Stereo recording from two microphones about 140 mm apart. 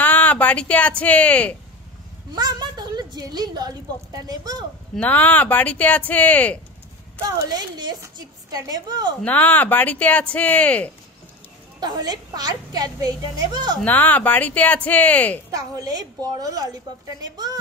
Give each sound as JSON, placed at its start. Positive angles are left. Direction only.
{"t": 0.0, "sound": "speech", "side_deg": 10}
{"t": 2.3, "sound": "a sound", "side_deg": -30}
{"t": 4.3, "sound": "a woman's voice", "side_deg": -30}
{"t": 4.9, "sound": "speech", "side_deg": 10}
{"t": 7.2, "sound": "a woman's voice", "side_deg": -30}
{"t": 9.2, "sound": "speech", "side_deg": 10}
{"t": 11.8, "sound": "a woman's voice", "side_deg": -30}
{"t": 13.8, "sound": "speech", "side_deg": 10}
{"t": 15.5, "sound": "a woman's voice", "side_deg": -25}